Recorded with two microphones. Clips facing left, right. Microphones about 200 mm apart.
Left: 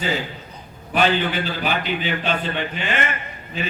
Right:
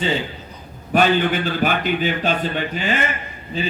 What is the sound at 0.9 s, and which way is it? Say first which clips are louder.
A man's voice: right 3 dB; 50° right (ahead or behind).